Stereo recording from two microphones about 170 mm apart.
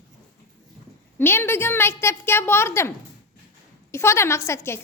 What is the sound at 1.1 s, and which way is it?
A woman's voice, 15° left (ahead or behind).